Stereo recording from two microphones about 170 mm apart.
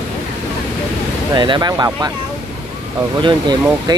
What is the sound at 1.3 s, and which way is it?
Speech, 25° right (ahead or behind).